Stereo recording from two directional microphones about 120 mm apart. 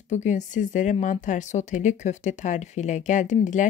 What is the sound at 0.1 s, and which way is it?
Speech, 90° left.